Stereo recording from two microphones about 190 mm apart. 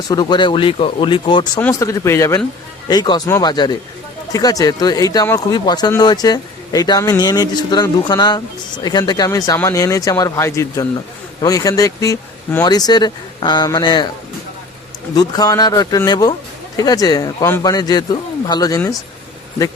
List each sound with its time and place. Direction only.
0.1 s speech: 20° left (ahead or behind)
1.6 s speech: 15° left (ahead or behind)
15.1 s speech: 20° left (ahead or behind)